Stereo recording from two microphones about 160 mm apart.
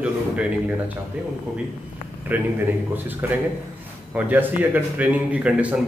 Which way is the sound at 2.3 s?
10° right (ahead or behind).